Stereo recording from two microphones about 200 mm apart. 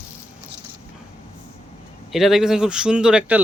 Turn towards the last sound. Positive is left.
turn(degrees=-5)  # may be behind; listen again after turning